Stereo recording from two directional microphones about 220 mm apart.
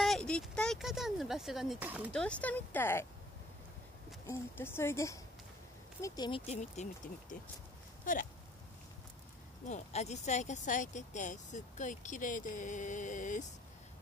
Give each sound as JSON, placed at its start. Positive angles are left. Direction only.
{"t": 0.0, "sound": "speech", "side_deg": 0}
{"t": 2.1, "sound": "speech", "side_deg": 5}
{"t": 4.3, "sound": "speech", "side_deg": 10}
{"t": 8.0, "sound": "a sound", "side_deg": 35}
{"t": 9.7, "sound": "speech", "side_deg": 30}